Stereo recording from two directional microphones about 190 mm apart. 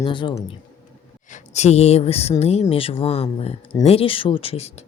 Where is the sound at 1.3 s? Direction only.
35° left (ahead or behind).